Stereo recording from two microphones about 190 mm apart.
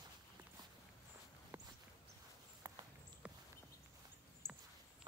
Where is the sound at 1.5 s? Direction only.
10° right (ahead or behind).